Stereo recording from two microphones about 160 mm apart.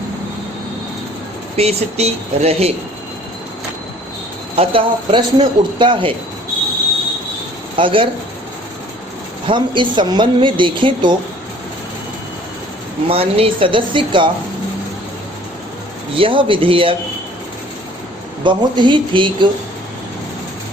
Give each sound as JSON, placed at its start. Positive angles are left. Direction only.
{"t": 1.5, "sound": "speech", "side_deg": -40}
{"t": 4.5, "sound": "speech", "side_deg": -35}
{"t": 7.8, "sound": "speech", "side_deg": -30}
{"t": 9.5, "sound": "speech", "side_deg": -30}
{"t": 13.1, "sound": "speech", "side_deg": -35}
{"t": 16.1, "sound": "speech", "side_deg": -35}
{"t": 18.4, "sound": "speech", "side_deg": -30}